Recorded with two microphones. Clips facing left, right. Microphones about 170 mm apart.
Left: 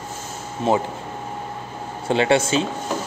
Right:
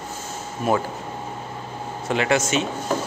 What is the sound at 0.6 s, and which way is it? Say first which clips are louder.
Speech: left 2 dB; 25° left (ahead or behind).